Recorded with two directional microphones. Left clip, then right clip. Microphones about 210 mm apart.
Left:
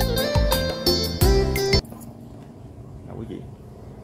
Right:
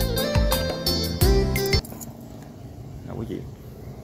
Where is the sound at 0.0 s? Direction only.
Centre (ahead or behind).